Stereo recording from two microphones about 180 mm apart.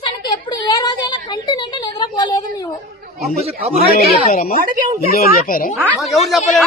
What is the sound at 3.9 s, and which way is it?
Speech, 55° left (ahead or behind).